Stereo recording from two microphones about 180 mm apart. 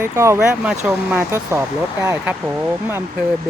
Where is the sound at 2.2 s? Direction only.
10° right (ahead or behind).